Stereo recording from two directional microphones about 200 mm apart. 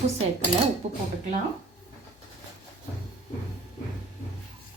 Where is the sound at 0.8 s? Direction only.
35° right (ahead or behind).